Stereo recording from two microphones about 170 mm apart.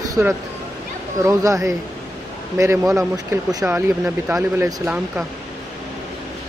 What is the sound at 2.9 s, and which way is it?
Speech, 20° right (ahead or behind).